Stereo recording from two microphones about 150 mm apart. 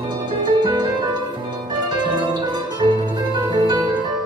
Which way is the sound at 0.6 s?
30° right (ahead or behind).